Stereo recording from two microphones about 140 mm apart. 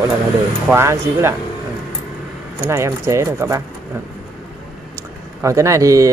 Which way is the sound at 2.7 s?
20° right (ahead or behind).